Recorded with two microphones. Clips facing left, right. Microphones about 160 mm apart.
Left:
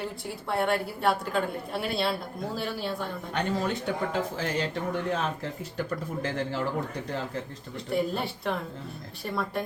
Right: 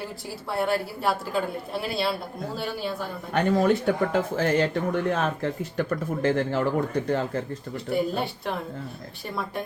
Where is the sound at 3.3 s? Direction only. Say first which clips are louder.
Right 8 dB; 55° right (ahead or behind).